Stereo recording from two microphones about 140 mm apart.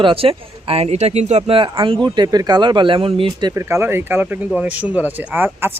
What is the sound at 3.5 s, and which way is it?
Speech, 20° right (ahead or behind).